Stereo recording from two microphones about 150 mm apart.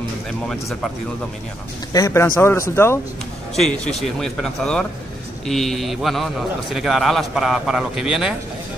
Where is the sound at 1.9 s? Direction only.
20° left (ahead or behind).